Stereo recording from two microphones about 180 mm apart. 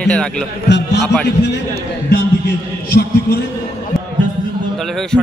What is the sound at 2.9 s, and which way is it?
Speech, 60° left (ahead or behind).